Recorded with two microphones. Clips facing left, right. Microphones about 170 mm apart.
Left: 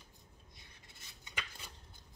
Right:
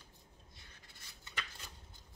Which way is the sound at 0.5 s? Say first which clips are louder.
Even; 20° left (ahead or behind).